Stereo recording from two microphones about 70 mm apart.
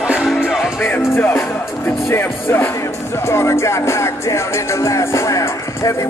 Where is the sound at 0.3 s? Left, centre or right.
Centre.